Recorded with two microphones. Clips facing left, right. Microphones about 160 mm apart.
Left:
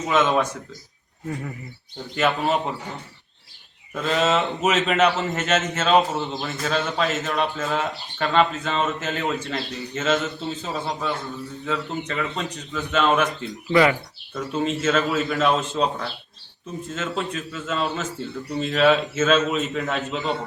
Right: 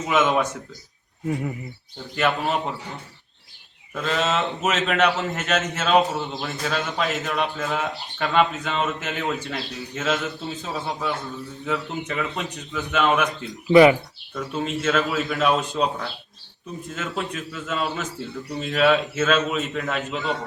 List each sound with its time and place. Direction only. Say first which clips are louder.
0.1 s speech: even; 5° right (ahead or behind)
2.1 s speech: left 1 dB; centre (ahead or behind)
3.9 s speech: left 2 dB; 5° left (ahead or behind)
13.7 s speech: right 5 dB; 20° right (ahead or behind)
14.3 s speech: left 2 dB; centre (ahead or behind)